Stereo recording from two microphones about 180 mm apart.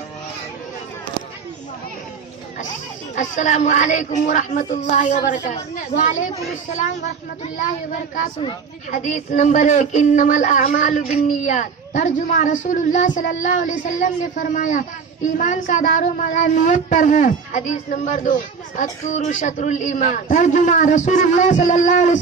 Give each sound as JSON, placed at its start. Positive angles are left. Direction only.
{"t": 3.2, "sound": "speech", "side_deg": 40}
{"t": 8.9, "sound": "speech", "side_deg": 45}